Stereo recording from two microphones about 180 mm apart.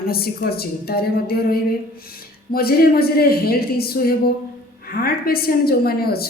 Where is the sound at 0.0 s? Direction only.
55° left (ahead or behind).